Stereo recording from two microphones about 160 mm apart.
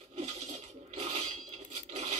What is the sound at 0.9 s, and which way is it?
Dishes, 40° right (ahead or behind).